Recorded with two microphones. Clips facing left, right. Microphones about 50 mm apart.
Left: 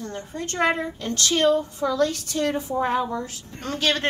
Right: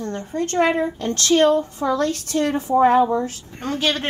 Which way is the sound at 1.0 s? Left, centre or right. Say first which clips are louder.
Right 4 dB; right.